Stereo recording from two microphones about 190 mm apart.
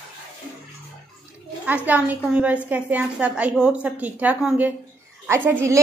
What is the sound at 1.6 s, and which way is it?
A woman's voice, 10° right (ahead or behind).